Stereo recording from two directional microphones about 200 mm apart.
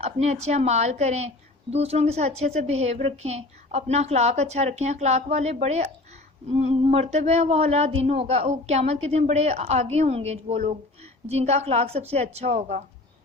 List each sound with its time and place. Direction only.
0.0 s a woman's voice: 30° right (ahead or behind)